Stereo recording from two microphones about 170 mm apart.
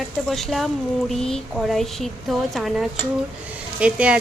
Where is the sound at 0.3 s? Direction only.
Centre (ahead or behind).